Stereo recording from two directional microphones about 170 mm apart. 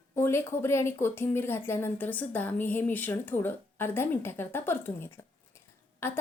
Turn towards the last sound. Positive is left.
turn(degrees=15)  # may be behind; listen again after turning